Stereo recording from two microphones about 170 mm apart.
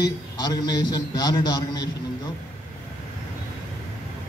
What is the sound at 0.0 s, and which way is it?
A man's voice, 25° left (ahead or behind).